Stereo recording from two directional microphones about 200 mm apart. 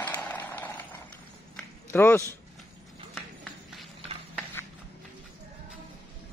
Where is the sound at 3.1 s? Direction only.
Centre (ahead or behind).